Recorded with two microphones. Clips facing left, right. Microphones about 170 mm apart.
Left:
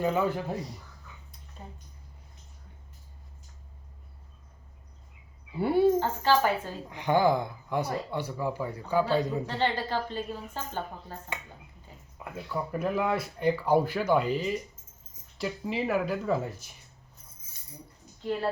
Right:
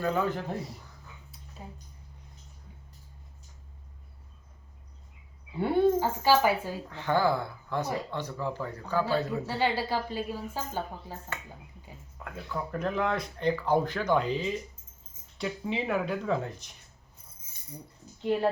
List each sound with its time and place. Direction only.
0.0 s speech: 15° left (ahead or behind)
1.6 s speech: 5° right (ahead or behind)
5.5 s speech: 5° left (ahead or behind)
6.0 s a woman's voice: 10° right (ahead or behind)
6.8 s speech: 15° left (ahead or behind)
9.5 s a woman's voice: 10° right (ahead or behind)
12.2 s speech: 10° left (ahead or behind)
18.2 s speech: 15° right (ahead or behind)